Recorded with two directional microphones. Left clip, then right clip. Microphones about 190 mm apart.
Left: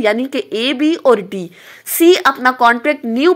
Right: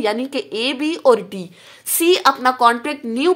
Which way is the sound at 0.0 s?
20° left (ahead or behind).